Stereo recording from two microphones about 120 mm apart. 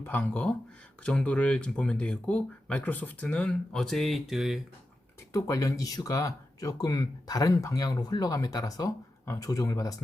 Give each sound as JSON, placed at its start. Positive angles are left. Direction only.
{"t": 0.0, "sound": "speech", "side_deg": 15}
{"t": 5.3, "sound": "speech", "side_deg": 30}